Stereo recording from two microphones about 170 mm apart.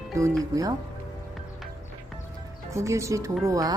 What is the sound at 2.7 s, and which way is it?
Speech, 15° right (ahead or behind).